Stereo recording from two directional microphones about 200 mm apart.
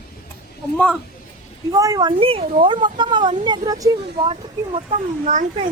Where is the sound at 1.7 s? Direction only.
20° right (ahead or behind).